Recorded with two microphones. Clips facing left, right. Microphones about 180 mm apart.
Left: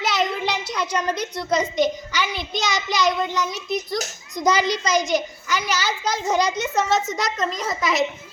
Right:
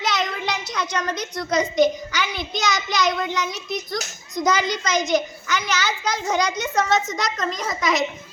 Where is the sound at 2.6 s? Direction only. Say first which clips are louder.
Right 1 dB; 30° left (ahead or behind).